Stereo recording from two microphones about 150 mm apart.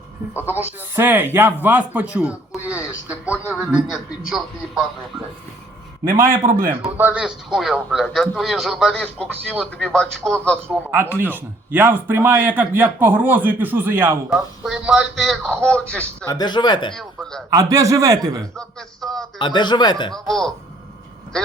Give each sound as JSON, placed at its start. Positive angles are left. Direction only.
{"t": 0.3, "sound": "a man's voice", "side_deg": -10}
{"t": 6.7, "sound": "speech", "side_deg": -15}
{"t": 10.9, "sound": "a man's voice", "side_deg": -15}
{"t": 14.3, "sound": "speech", "side_deg": 0}
{"t": 16.2, "sound": "speech", "side_deg": 25}
{"t": 16.9, "sound": "speech", "side_deg": 0}
{"t": 17.5, "sound": "speech", "side_deg": -25}
{"t": 18.5, "sound": "speech", "side_deg": 5}
{"t": 19.4, "sound": "speech", "side_deg": 30}
{"t": 20.1, "sound": "speech", "side_deg": 0}